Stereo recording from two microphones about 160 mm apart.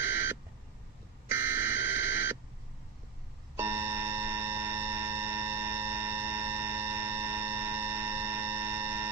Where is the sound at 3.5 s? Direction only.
15° right (ahead or behind).